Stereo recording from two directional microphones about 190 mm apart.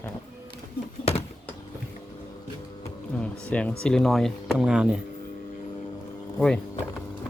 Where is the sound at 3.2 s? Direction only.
5° left (ahead or behind).